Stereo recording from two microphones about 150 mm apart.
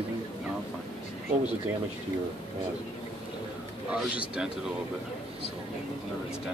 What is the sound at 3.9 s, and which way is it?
Speech, 5° right (ahead or behind).